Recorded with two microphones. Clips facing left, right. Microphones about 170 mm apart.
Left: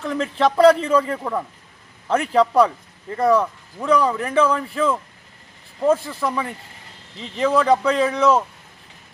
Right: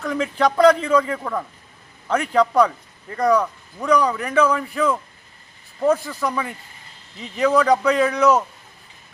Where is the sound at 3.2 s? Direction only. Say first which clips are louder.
Left 1 dB; 5° left (ahead or behind).